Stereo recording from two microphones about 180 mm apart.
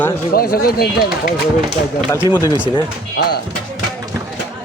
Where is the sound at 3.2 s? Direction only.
60° left (ahead or behind).